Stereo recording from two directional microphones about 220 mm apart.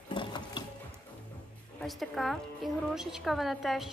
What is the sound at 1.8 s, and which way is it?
A woman's voice, centre (ahead or behind).